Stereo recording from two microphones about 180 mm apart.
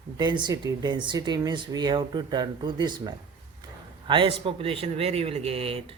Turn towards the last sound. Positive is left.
turn(degrees=-30)  # may be behind; listen again after turning